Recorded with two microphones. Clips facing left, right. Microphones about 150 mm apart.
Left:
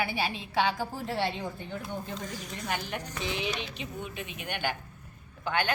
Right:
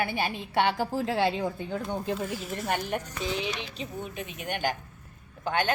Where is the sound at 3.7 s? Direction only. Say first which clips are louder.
Right 2 dB; 35° right (ahead or behind).